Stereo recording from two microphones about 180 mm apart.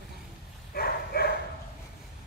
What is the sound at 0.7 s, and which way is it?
Dog, 60° left (ahead or behind).